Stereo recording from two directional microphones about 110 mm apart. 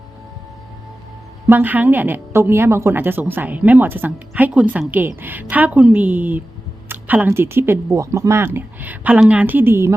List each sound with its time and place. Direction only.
1.5 s a woman's voice: 15° right (ahead or behind)